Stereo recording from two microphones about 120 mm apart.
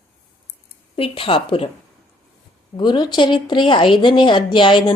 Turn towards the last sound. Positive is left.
turn(degrees=40)  # may be behind; listen again after turning